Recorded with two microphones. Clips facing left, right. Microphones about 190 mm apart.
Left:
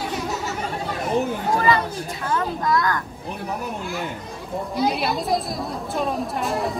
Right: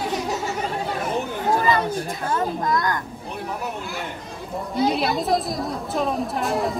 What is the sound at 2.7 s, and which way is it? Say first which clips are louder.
Speech: left 4 dB; 20° right (ahead or behind).